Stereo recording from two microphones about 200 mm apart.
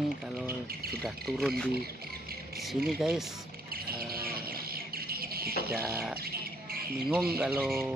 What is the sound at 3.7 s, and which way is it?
Bird, 50° right (ahead or behind).